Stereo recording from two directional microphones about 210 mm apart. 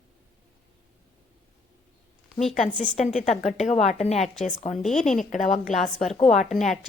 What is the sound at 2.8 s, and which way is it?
A woman's voice, 30° left (ahead or behind).